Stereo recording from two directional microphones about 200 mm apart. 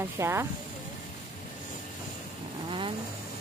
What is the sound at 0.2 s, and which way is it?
Speech, 15° right (ahead or behind).